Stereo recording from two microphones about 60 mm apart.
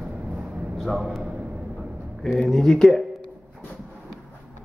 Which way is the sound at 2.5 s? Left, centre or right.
Centre.